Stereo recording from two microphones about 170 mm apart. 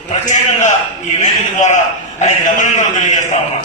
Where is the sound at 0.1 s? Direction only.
45° left (ahead or behind).